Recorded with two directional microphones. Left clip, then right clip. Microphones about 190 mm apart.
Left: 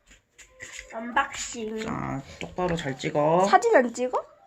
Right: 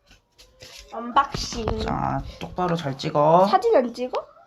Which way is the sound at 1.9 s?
10° right (ahead or behind).